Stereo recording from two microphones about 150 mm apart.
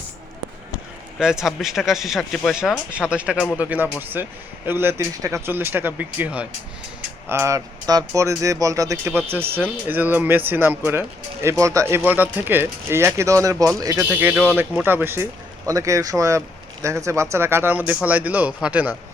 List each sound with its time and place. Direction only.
1.2 s speech: 5° right (ahead or behind)